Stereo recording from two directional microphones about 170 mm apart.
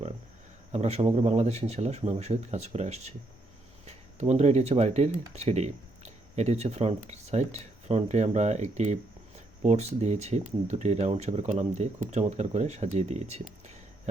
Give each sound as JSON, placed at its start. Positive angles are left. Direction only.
{"t": 0.7, "sound": "speech", "side_deg": -40}